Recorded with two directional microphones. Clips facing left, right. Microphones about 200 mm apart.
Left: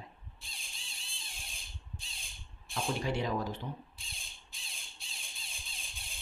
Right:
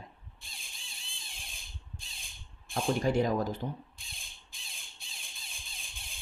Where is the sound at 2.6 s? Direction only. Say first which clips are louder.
Right 5 dB; 50° right (ahead or behind).